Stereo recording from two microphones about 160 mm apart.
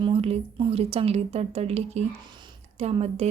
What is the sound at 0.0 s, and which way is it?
A woman's voice, 40° right (ahead or behind).